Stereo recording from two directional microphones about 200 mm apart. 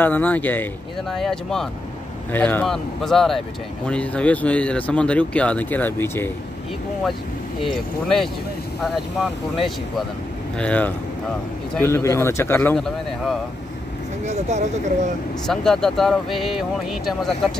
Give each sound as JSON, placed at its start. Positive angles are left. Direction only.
{"t": 0.0, "sound": "speech", "side_deg": 10}
{"t": 7.6, "sound": "speech", "side_deg": 0}
{"t": 14.2, "sound": "speech", "side_deg": -35}
{"t": 15.4, "sound": "speech", "side_deg": 0}